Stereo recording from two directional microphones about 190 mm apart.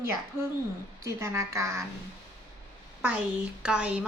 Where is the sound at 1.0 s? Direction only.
15° right (ahead or behind).